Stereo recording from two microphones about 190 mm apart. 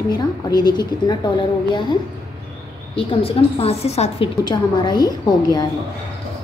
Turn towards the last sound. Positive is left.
turn(degrees=20)  # may be behind; listen again after turning